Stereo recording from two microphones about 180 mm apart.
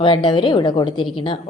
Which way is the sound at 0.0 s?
25° left (ahead or behind).